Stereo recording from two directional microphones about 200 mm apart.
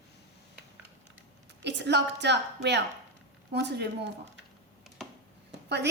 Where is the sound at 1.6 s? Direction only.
60° right (ahead or behind).